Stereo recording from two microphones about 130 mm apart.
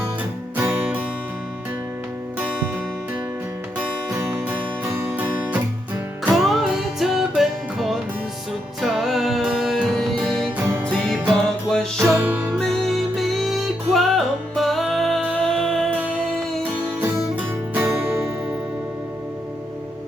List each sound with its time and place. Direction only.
0.5 s music: 15° right (ahead or behind)
4.4 s music: 15° right (ahead or behind)
6.2 s music: centre (ahead or behind)
10.7 s music: 15° right (ahead or behind)
11.7 s music: 5° left (ahead or behind)
12.1 s music: 15° right (ahead or behind)
12.5 s music: centre (ahead or behind)
17.7 s music: 15° right (ahead or behind)